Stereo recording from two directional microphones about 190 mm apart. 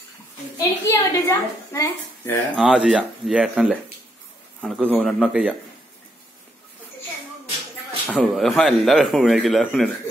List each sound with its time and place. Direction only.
0.6 s a woman's voice: 15° left (ahead or behind)
2.5 s speech: 5° right (ahead or behind)
8.1 s speech: 5° left (ahead or behind)